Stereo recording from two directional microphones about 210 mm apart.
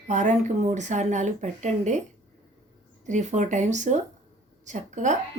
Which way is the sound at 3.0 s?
35° right (ahead or behind).